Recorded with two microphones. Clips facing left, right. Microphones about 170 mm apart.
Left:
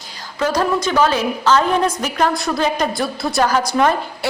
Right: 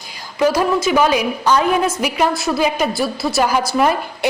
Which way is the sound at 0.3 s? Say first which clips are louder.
Right 3 dB; 10° right (ahead or behind).